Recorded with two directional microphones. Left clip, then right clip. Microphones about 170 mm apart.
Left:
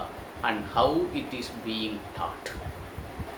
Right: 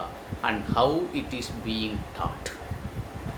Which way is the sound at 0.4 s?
25° right (ahead or behind).